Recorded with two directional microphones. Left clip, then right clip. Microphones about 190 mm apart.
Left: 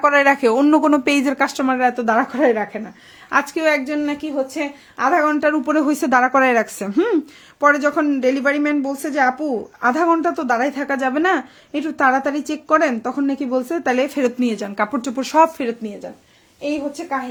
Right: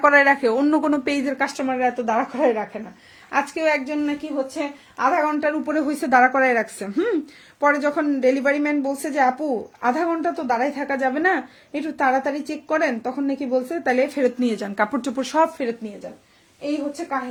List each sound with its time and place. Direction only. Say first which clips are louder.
0.0 s a woman's voice: left 1 dB; 25° left (ahead or behind)
14.4 s speech: left 1 dB; 10° left (ahead or behind)